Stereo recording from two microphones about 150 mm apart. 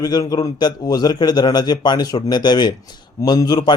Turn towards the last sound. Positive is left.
turn(degrees=25)  # may be behind; listen again after turning